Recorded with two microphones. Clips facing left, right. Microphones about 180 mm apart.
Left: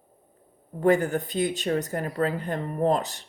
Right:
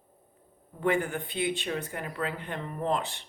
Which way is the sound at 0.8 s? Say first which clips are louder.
Left 6 dB; 40° left (ahead or behind).